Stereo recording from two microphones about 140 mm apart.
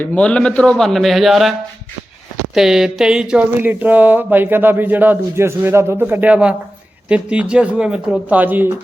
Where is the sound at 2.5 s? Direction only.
5° right (ahead or behind).